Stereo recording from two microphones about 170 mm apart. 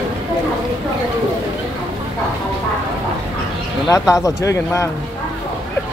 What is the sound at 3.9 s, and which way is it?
Speech, 20° left (ahead or behind).